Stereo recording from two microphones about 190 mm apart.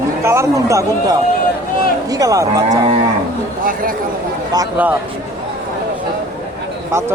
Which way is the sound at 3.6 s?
45° right (ahead or behind).